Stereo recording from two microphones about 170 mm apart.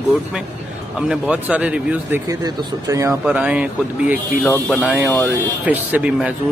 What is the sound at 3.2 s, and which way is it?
Speech, 5° right (ahead or behind).